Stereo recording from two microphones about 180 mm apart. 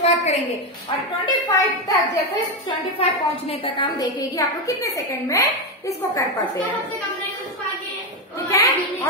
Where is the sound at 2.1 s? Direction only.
35° left (ahead or behind).